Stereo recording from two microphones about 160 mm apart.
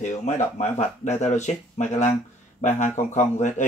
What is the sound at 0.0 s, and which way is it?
Speech, 45° left (ahead or behind).